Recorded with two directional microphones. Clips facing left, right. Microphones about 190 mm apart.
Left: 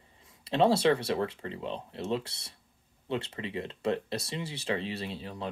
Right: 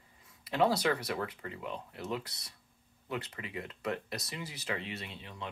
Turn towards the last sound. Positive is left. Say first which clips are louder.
# left 7 dB
turn(degrees=35)  # may be behind; listen again after turning